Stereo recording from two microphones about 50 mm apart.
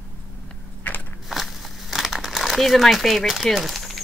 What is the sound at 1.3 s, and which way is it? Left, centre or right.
Crumpling, centre.